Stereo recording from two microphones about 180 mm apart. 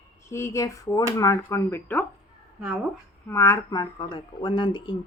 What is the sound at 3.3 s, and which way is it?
Speech, 15° left (ahead or behind).